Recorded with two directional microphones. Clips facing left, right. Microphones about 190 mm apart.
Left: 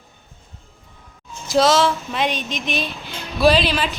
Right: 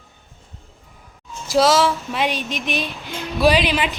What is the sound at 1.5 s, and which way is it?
Speech, 5° right (ahead or behind).